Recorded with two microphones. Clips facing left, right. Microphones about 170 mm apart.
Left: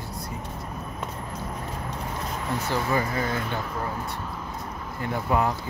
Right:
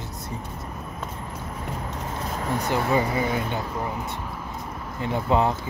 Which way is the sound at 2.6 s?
20° right (ahead or behind).